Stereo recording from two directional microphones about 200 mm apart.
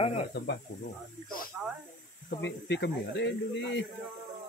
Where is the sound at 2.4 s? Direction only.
60° left (ahead or behind).